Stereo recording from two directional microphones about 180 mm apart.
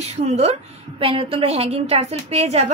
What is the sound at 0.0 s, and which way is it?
A woman's voice, 35° right (ahead or behind).